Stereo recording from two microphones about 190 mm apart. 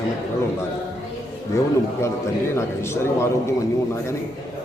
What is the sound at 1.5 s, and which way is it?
Speech, 15° left (ahead or behind).